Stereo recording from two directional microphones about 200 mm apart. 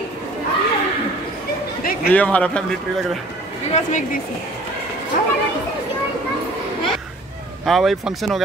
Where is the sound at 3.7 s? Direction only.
35° left (ahead or behind).